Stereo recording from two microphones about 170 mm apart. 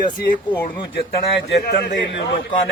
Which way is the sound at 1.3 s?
85° left.